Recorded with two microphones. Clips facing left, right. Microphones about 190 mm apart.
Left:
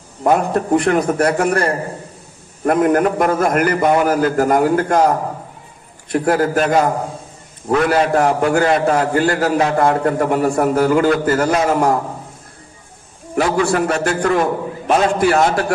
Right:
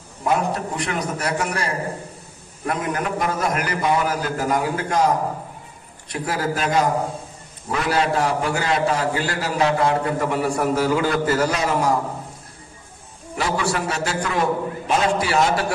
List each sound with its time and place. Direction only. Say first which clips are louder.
0.2 s a man's voice: left 6 dB; 50° left (ahead or behind)
6.0 s a man's voice: left 9 dB; 55° left (ahead or behind)
13.4 s a man's voice: left 7 dB; 55° left (ahead or behind)